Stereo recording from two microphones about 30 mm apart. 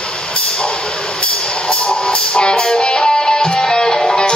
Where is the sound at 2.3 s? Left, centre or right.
Left.